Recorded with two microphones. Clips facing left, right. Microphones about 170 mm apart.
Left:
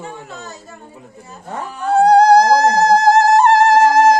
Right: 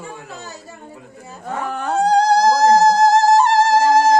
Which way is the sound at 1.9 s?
60° left (ahead or behind).